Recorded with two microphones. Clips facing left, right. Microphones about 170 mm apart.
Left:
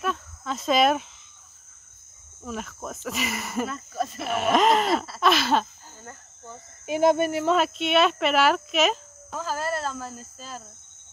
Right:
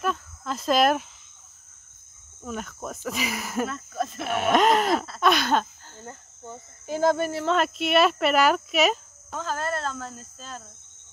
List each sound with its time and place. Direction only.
0.0 s speech: centre (ahead or behind)
2.4 s speech: centre (ahead or behind)
6.9 s speech: 20° left (ahead or behind)
7.5 s speech: centre (ahead or behind)